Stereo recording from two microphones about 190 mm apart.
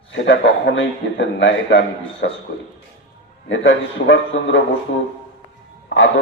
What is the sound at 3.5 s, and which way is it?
A man's voice, 75° left (ahead or behind).